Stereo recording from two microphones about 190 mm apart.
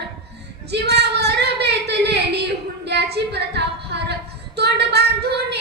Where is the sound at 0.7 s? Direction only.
60° right (ahead or behind).